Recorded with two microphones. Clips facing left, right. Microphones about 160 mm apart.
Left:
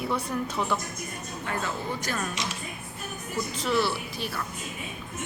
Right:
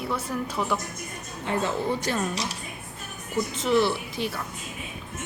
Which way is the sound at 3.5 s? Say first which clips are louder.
Right 4 dB; 20° right (ahead or behind).